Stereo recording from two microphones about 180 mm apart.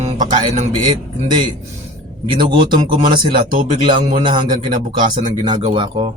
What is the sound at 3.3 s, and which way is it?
Speech, 50° right (ahead or behind).